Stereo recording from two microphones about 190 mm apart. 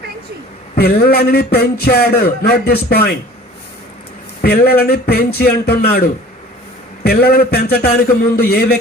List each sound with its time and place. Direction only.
0.8 s a man's voice: 55° left (ahead or behind)
4.4 s a man's voice: 55° left (ahead or behind)